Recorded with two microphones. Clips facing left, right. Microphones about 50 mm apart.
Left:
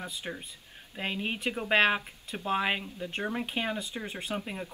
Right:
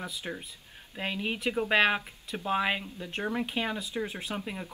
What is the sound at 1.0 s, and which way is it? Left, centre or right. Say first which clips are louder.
Speech: right 1 dB; left.